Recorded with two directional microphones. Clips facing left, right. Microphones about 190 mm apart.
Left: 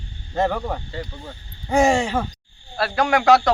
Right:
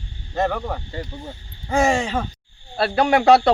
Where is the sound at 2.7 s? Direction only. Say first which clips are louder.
Right 2 dB; 30° right (ahead or behind).